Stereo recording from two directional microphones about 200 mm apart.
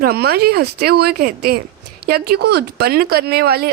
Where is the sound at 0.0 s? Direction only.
50° right (ahead or behind).